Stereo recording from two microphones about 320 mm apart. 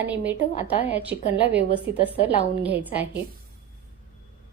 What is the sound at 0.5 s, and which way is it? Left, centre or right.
Speech, centre.